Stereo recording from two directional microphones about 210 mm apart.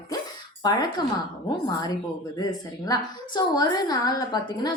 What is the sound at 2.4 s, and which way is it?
A woman's voice, 20° left (ahead or behind).